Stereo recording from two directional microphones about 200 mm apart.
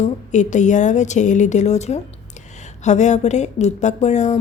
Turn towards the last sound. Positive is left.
turn(degrees=35)  # may be behind; listen again after turning